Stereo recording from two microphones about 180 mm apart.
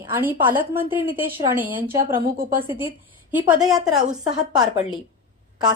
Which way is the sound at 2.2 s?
55° right (ahead or behind).